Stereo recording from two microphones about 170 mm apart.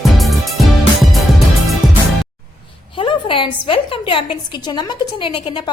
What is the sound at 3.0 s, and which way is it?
A woman's voice, 30° left (ahead or behind).